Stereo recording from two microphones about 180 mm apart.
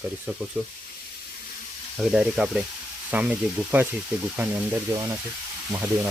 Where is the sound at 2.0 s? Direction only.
Centre (ahead or behind).